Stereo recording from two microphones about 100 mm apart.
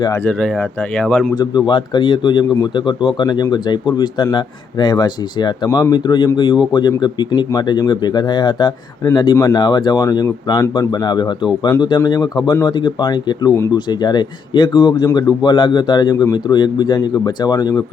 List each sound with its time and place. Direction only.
0.3 s speech: 5° left (ahead or behind)
1.0 s speech: 5° left (ahead or behind)
1.4 s a man's voice: 50° left (ahead or behind)
5.6 s speech: 30° left (ahead or behind)
5.9 s a man's voice: 45° left (ahead or behind)